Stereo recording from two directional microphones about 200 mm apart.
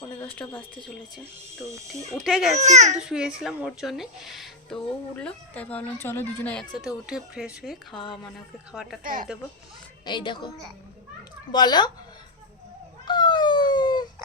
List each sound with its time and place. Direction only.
2.1 s speech: centre (ahead or behind)
2.6 s speech: 35° right (ahead or behind)
3.0 s speech: 5° right (ahead or behind)
10.1 s a woman's voice: 25° left (ahead or behind)
11.5 s a woman's voice: 20° left (ahead or behind)
13.1 s a sound: 20° left (ahead or behind)